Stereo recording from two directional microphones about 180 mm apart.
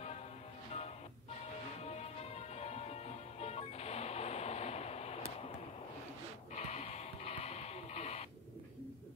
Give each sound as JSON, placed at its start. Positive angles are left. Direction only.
{"t": 1.8, "sound": "music", "side_deg": 35}
{"t": 6.5, "sound": "radio", "side_deg": 40}